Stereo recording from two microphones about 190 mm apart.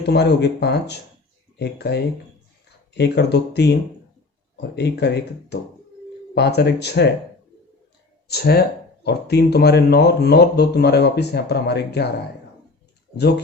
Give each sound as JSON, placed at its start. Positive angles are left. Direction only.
{"t": 0.0, "sound": "speech", "side_deg": 60}
{"t": 8.3, "sound": "speech", "side_deg": 55}